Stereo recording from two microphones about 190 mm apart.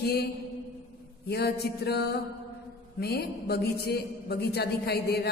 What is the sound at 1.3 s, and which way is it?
A man's voice, 60° left (ahead or behind).